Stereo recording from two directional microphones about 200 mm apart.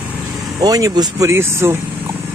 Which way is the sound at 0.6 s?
20° right (ahead or behind).